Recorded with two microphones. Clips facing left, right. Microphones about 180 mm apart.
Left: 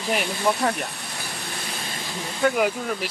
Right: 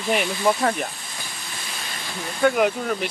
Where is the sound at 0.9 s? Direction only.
70° left (ahead or behind).